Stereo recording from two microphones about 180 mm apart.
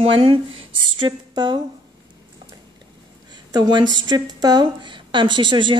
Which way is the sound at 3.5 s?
20° right (ahead or behind).